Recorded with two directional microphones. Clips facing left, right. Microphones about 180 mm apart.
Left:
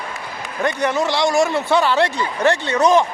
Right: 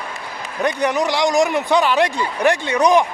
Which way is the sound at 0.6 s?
15° right (ahead or behind).